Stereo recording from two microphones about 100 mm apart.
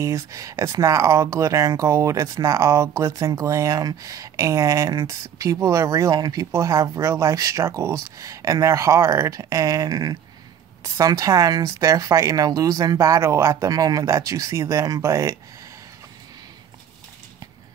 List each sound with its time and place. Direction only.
0.0 s speech: 30° right (ahead or behind)